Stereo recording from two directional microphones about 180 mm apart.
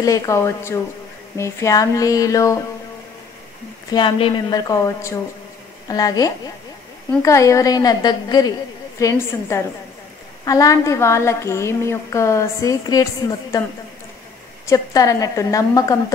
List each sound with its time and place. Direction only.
0.0 s a woman's voice: 20° left (ahead or behind)
3.9 s a woman's voice: 30° left (ahead or behind)
14.7 s a woman's voice: 20° left (ahead or behind)